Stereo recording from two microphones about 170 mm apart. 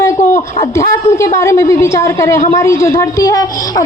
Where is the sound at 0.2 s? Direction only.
40° left (ahead or behind).